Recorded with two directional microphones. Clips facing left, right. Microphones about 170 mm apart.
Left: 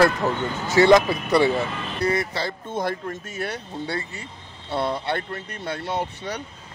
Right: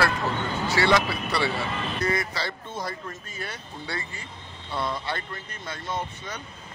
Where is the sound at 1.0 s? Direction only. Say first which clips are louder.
Left 8 dB; 20° left (ahead or behind).